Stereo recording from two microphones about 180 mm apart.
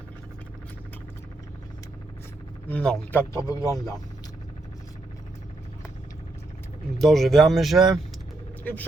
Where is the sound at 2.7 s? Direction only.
5° left (ahead or behind).